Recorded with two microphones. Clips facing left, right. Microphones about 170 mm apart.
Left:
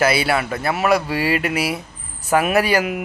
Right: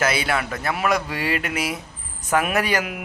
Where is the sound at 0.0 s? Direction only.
10° left (ahead or behind).